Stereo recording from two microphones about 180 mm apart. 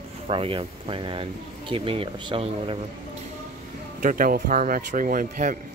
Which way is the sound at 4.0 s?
50° right (ahead or behind).